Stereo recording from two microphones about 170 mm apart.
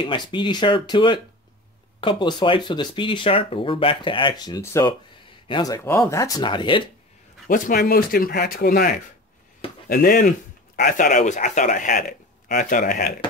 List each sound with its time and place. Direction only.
0.0 s speech: 30° left (ahead or behind)
7.4 s speech: 55° left (ahead or behind)